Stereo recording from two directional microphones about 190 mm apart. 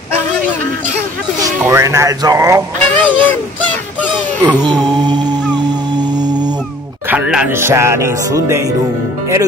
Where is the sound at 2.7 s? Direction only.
10° left (ahead or behind).